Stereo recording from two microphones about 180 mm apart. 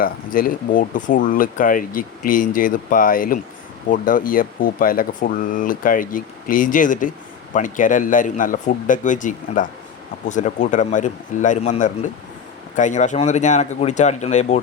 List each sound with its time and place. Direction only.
0.0 s speech: 50° left (ahead or behind)